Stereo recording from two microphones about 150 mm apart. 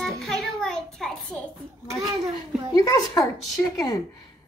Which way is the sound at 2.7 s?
25° left (ahead or behind).